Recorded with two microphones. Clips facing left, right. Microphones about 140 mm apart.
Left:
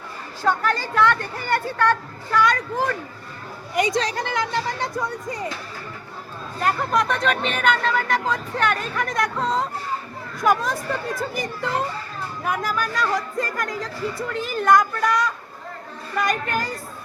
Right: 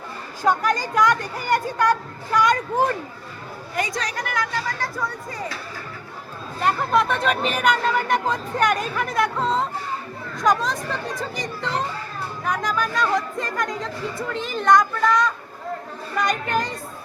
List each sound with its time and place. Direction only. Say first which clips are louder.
0.4 s speech: right 1 dB; 15° right (ahead or behind)
3.8 s speech: left 5 dB; 25° left (ahead or behind)
6.6 s speech: right 1 dB; centre (ahead or behind)